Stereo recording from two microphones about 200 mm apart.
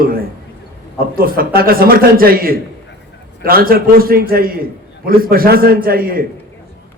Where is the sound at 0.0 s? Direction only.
45° right (ahead or behind).